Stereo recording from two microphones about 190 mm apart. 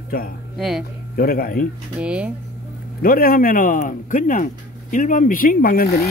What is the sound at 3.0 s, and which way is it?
Speech, 50° left (ahead or behind).